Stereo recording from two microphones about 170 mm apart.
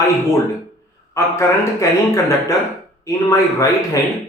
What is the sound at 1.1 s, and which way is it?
Speech, 20° left (ahead or behind).